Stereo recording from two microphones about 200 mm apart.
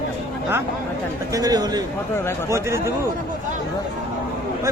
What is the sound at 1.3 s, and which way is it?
A man's voice, 20° right (ahead or behind).